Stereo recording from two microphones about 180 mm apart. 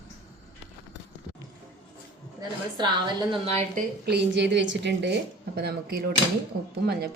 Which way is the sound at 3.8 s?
65° right (ahead or behind).